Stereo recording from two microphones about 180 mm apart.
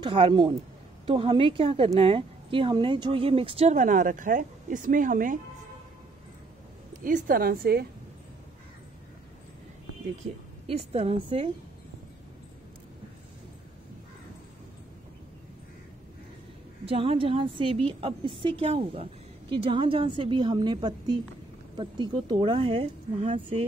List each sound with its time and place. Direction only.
0.0 s a woman's voice: 30° right (ahead or behind); by 5.4 s 50° right (ahead or behind)
7.0 s a woman's voice: 50° right (ahead or behind)
10.2 s speech: 35° right (ahead or behind)
16.8 s a woman's voice: 30° right (ahead or behind)